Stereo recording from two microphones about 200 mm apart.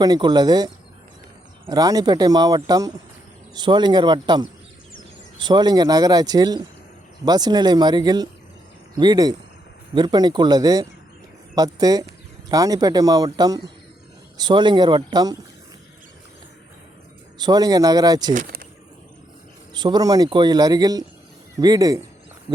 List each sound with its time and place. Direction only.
0.0 s speech: 20° right (ahead or behind)
17.3 s speech: 20° right (ahead or behind)
18.3 s speech: 45° right (ahead or behind)
19.7 s speech: 20° right (ahead or behind)